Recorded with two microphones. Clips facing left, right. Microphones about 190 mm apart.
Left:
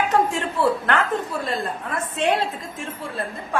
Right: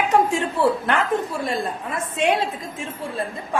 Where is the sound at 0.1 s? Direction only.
15° right (ahead or behind).